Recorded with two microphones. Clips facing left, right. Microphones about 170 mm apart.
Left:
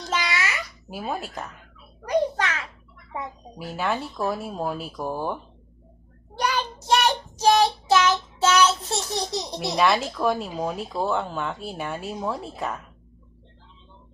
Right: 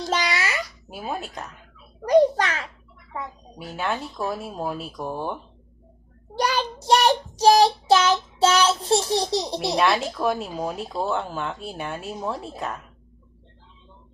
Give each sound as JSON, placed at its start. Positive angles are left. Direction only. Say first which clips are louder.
{"t": 0.1, "sound": "babbling", "louder": "right 1 dB", "side_deg": -35}
{"t": 0.9, "sound": "speech", "louder": "left 4 dB", "side_deg": 0}
{"t": 2.0, "sound": "a child's voice", "louder": "right 6 dB", "side_deg": -35}
{"t": 3.6, "sound": "speech", "louder": "left 1 dB", "side_deg": 0}
{"t": 6.4, "sound": "child singing", "louder": "right 2 dB", "side_deg": -35}
{"t": 9.7, "sound": "speech", "louder": "left 1 dB", "side_deg": 0}